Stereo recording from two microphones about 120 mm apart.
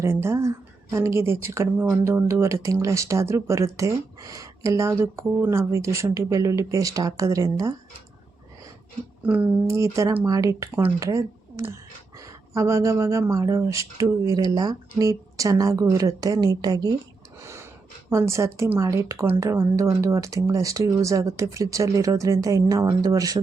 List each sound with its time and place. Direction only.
0.0 s speech: 20° right (ahead or behind)
9.2 s speech: 15° right (ahead or behind)
9.6 s speech: 25° right (ahead or behind)
17.4 s snort: 20° right (ahead or behind)
18.1 s speech: 25° right (ahead or behind)